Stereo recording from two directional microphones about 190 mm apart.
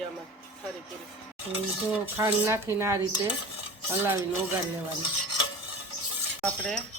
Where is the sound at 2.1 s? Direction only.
15° right (ahead or behind).